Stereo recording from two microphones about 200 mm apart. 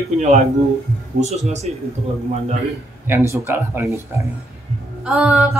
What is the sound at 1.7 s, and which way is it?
Speech, 35° right (ahead or behind).